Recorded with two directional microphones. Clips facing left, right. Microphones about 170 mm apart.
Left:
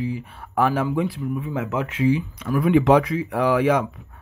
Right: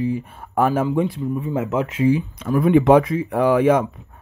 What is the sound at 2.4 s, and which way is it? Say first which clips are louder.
Speech: right 4 dB; 30° right (ahead or behind).